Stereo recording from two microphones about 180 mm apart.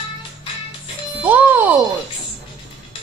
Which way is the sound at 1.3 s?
10° right (ahead or behind).